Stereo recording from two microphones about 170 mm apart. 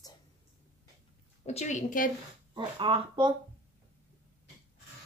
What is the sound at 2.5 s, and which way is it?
Speech, 30° right (ahead or behind).